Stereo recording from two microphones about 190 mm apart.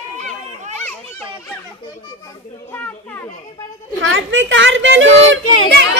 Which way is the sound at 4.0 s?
85° right.